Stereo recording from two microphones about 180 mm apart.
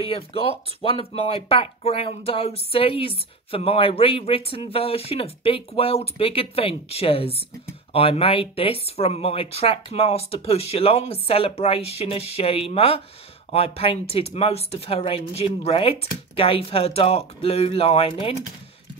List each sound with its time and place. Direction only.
0.0 s speech: 30° left (ahead or behind)